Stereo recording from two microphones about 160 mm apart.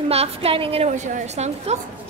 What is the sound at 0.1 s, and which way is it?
A woman's voice, 40° right (ahead or behind).